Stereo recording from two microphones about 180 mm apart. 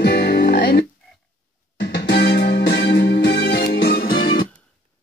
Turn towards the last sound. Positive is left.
turn(degrees=55)  # may be behind; listen again after turning